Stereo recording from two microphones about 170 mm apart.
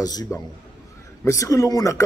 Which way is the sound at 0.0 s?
20° left (ahead or behind).